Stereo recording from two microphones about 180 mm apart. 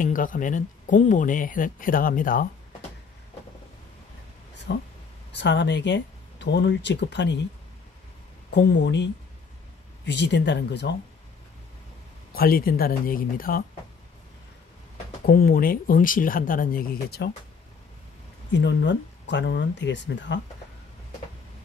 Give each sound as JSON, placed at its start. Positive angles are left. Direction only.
{"t": 0.0, "sound": "speech", "side_deg": 50}
{"t": 4.7, "sound": "speech", "side_deg": 75}
{"t": 8.5, "sound": "speech", "side_deg": 75}
{"t": 12.4, "sound": "speech", "side_deg": 55}
{"t": 15.2, "sound": "speech", "side_deg": 55}
{"t": 18.5, "sound": "speech", "side_deg": 75}